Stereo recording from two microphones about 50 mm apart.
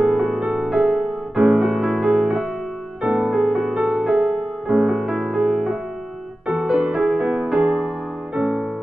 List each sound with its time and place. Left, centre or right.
0.0 s music: centre